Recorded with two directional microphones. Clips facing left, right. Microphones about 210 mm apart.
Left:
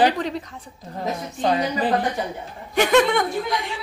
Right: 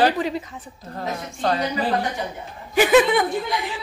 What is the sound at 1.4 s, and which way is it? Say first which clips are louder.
Speech: left 1 dB; 20° left (ahead or behind).